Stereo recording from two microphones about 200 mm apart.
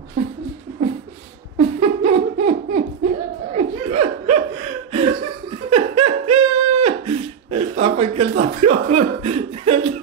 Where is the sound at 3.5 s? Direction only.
35° right (ahead or behind).